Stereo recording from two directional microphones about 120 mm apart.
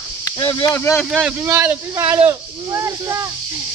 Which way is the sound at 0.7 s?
20° left (ahead or behind).